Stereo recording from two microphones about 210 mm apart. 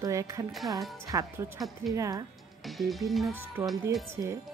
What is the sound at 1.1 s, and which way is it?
Speech, 15° right (ahead or behind).